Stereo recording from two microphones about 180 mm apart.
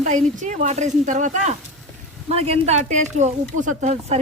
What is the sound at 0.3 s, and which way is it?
Speech, 45° right (ahead or behind).